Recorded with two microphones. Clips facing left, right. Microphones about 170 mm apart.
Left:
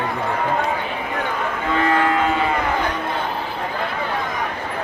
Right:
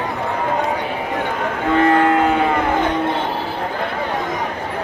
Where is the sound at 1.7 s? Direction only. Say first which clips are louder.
Right 5 dB; 55° right (ahead or behind).